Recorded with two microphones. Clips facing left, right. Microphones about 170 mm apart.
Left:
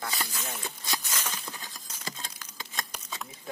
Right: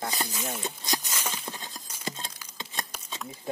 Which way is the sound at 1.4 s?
20° right (ahead or behind).